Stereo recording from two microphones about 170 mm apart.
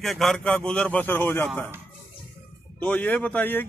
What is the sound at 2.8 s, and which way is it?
Speech, 10° left (ahead or behind).